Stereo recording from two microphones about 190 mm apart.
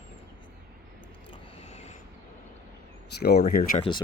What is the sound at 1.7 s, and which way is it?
Vehicle, 35° left (ahead or behind).